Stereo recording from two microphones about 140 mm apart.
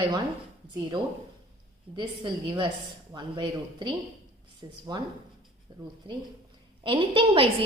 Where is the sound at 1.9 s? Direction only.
35° right (ahead or behind).